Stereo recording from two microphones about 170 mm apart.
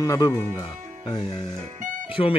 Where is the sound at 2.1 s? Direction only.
35° left (ahead or behind).